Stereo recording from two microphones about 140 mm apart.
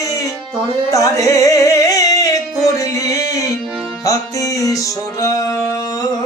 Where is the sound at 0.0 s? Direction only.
25° left (ahead or behind).